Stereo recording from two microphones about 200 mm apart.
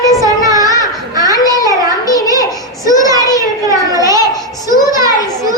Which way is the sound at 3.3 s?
15° right (ahead or behind).